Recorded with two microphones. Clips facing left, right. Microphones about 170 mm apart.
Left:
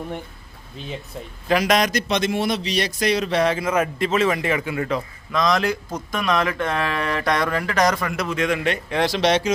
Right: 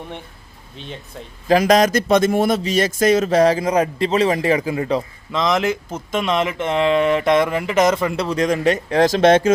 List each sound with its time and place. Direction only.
0.8 s speech: centre (ahead or behind)
1.5 s a man's voice: 40° right (ahead or behind)